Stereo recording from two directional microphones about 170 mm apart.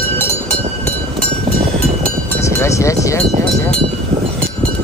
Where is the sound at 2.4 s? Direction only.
15° left (ahead or behind).